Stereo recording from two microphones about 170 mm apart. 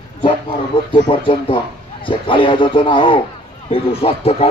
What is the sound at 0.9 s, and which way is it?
A man's voice, 30° left (ahead or behind).